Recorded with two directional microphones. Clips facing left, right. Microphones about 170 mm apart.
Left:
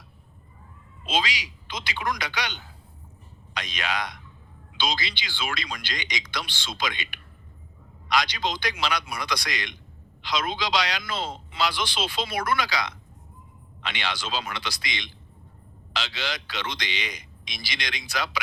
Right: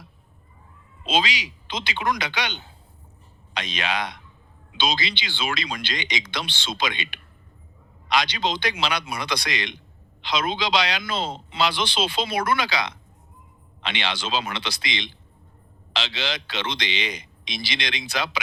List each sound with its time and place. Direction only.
1.1 s speech: 25° right (ahead or behind)